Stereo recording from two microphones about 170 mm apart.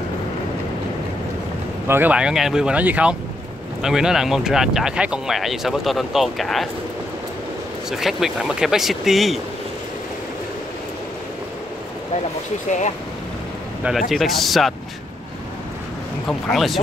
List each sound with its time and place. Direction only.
1.9 s speech: 10° right (ahead or behind)
7.9 s speech: centre (ahead or behind)
13.8 s speech: centre (ahead or behind)
16.3 s speech: centre (ahead or behind)